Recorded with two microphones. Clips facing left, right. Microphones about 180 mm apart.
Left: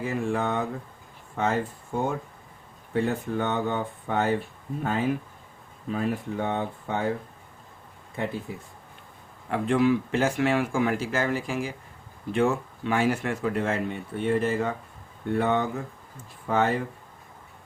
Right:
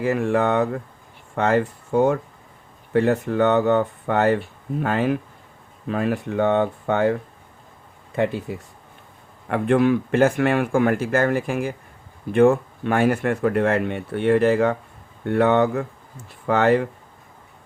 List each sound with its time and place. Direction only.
0.0 s speech: 70° right (ahead or behind)
9.5 s speech: 60° right (ahead or behind); by 16.8 s 75° right (ahead or behind)